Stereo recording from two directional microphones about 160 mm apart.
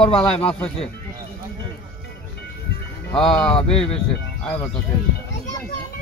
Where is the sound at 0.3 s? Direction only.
40° left (ahead or behind).